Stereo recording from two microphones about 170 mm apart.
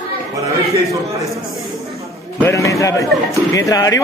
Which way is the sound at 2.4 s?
20° left (ahead or behind).